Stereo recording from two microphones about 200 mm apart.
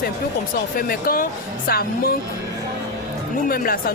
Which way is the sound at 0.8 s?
45° left (ahead or behind).